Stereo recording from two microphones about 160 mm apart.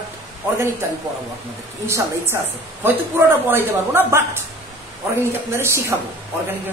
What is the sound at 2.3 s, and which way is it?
A man's voice, 15° right (ahead or behind).